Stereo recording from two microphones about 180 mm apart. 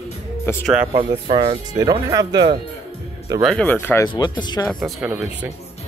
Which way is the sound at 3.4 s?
5° left (ahead or behind).